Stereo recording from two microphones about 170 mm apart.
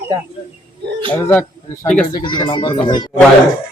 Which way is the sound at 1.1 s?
15° left (ahead or behind).